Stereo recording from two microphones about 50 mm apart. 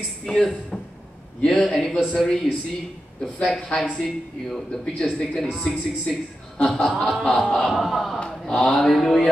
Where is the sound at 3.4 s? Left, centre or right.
Centre.